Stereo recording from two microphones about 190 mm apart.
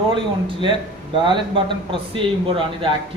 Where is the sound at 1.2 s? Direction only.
25° right (ahead or behind).